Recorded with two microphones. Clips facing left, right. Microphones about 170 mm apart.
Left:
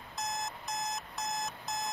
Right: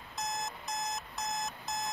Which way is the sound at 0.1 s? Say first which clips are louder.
Even; centre (ahead or behind).